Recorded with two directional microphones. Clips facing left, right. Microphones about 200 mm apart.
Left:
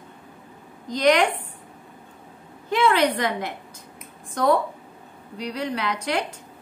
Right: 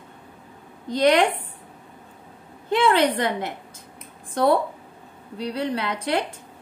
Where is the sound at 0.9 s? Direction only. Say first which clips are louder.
Right 1 dB; 30° right (ahead or behind).